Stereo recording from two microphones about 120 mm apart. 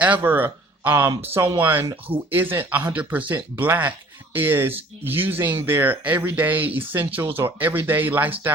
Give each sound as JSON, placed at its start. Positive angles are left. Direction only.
{"t": 0.0, "sound": "speech", "side_deg": -15}